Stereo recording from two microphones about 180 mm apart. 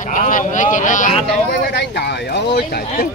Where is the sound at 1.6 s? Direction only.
70° left (ahead or behind).